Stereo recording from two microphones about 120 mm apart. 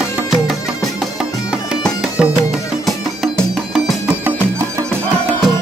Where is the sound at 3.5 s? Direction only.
Centre (ahead or behind).